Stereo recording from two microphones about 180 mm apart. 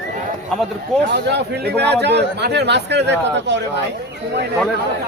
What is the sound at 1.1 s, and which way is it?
Speech, 70° right (ahead or behind).